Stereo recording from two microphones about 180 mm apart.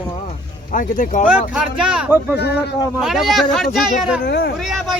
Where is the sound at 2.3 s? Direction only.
65° left (ahead or behind).